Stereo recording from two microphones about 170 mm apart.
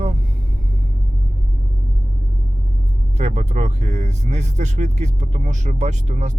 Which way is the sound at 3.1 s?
40° right (ahead or behind).